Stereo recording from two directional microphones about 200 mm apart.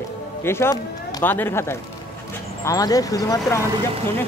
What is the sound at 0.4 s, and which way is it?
Speech, 10° left (ahead or behind).